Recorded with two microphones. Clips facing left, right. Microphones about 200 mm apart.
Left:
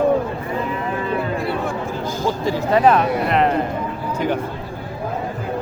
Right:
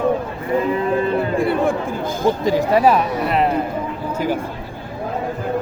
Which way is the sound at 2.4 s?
15° right (ahead or behind).